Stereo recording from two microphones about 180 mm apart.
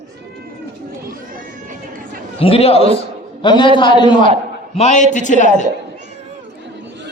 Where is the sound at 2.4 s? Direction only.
30° left (ahead or behind).